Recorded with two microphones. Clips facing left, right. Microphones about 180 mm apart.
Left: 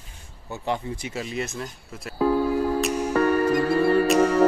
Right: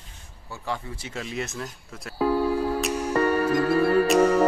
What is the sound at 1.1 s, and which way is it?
Speech, centre (ahead or behind).